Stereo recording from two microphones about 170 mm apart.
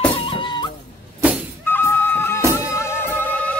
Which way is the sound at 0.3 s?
25° left (ahead or behind).